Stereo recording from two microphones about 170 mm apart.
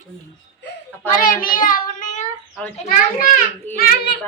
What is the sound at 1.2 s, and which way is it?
A child's voice, 55° left (ahead or behind).